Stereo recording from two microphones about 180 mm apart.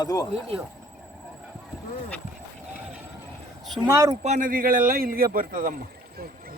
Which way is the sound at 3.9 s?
20° right (ahead or behind).